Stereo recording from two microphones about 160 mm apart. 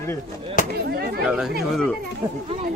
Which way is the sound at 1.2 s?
5° right (ahead or behind).